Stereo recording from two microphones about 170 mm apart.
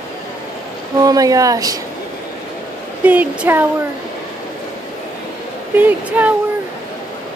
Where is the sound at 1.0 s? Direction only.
20° right (ahead or behind).